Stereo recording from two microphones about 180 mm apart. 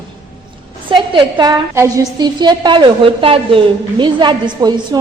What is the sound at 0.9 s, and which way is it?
A woman's voice, 25° right (ahead or behind).